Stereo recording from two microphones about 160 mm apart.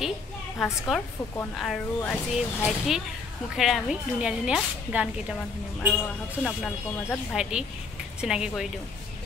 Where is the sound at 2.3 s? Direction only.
Centre (ahead or behind).